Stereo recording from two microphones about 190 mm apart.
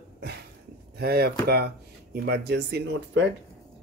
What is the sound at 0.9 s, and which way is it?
Speech, 55° right (ahead or behind).